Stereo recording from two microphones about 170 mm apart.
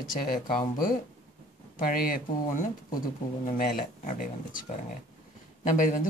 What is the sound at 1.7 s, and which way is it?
Speech, 55° left (ahead or behind).